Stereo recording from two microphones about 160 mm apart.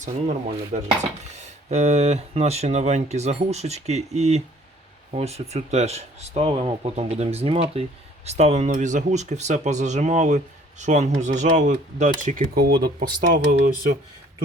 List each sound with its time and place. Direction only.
0.0 s speech: 50° right (ahead or behind); by 12.9 s 70° right (ahead or behind)
13.3 s speech: 55° right (ahead or behind)